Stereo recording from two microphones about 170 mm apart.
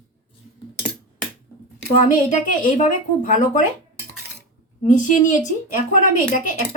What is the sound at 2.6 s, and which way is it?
Speech, 50° left (ahead or behind).